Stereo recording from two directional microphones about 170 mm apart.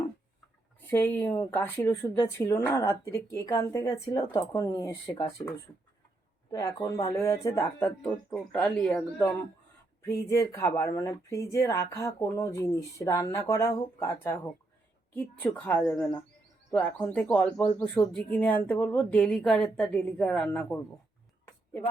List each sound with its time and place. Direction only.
0.9 s speech: 10° left (ahead or behind)
6.5 s a woman's voice: 20° left (ahead or behind)